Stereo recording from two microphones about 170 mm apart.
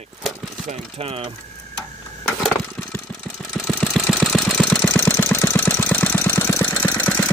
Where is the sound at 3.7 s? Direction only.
Centre (ahead or behind).